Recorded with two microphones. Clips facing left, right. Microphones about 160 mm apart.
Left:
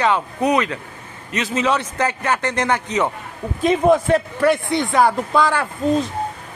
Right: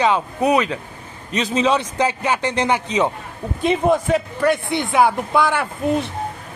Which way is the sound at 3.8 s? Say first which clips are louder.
Left 3 dB; 5° right (ahead or behind).